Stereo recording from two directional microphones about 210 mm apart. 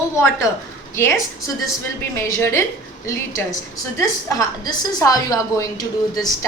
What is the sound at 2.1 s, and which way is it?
Speech, 10° left (ahead or behind).